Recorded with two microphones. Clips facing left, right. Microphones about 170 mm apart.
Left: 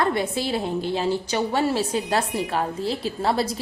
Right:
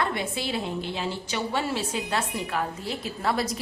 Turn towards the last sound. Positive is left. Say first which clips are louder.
# left 4 dB
turn(degrees=30)  # may be behind; listen again after turning